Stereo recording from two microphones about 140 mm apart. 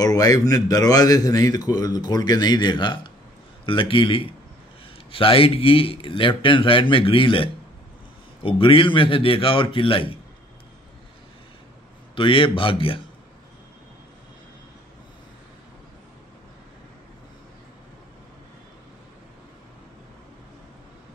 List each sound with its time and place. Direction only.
0.0 s a man's voice: 25° left (ahead or behind)
12.2 s a man's voice: 40° left (ahead or behind)